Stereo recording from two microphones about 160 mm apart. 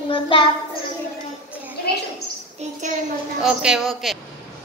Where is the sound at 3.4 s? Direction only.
5° right (ahead or behind).